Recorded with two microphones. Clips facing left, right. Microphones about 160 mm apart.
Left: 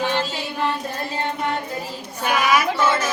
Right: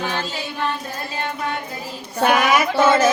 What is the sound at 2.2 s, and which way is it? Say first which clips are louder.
Mantra: right 5 dB; 50° right (ahead or behind).